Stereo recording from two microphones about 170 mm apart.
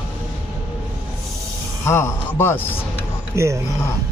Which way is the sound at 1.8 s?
15° left (ahead or behind).